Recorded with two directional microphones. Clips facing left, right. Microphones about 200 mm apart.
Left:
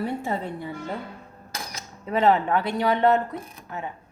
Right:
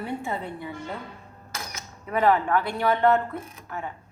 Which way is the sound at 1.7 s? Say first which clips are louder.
Left 2 dB; 25° left (ahead or behind).